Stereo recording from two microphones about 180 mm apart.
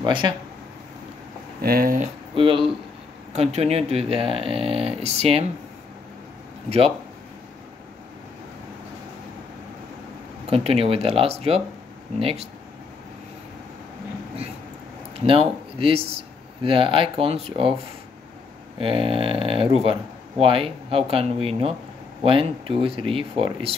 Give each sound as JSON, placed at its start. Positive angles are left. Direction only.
{"t": 0.0, "sound": "speech", "side_deg": -25}
{"t": 1.6, "sound": "speech", "side_deg": -55}
{"t": 2.3, "sound": "speech", "side_deg": -30}
{"t": 10.5, "sound": "speech", "side_deg": -35}
{"t": 15.2, "sound": "speech", "side_deg": -30}
{"t": 18.8, "sound": "speech", "side_deg": -30}